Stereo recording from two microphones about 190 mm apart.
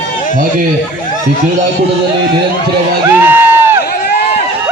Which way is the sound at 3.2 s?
10° right (ahead or behind).